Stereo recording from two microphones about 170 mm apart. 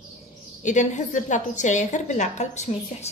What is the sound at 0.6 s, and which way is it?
A woman's voice, 45° left (ahead or behind).